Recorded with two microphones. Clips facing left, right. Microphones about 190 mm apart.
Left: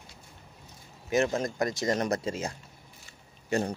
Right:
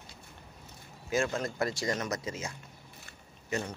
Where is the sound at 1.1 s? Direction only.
20° left (ahead or behind).